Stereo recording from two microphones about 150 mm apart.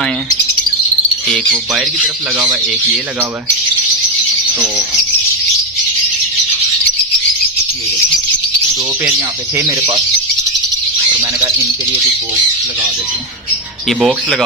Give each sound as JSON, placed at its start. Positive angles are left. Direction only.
{"t": 2.5, "sound": "speech", "side_deg": -5}
{"t": 9.6, "sound": "speech", "side_deg": -25}
{"t": 13.9, "sound": "speech", "side_deg": 0}